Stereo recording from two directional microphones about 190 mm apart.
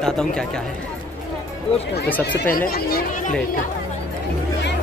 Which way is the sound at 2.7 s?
50° left (ahead or behind).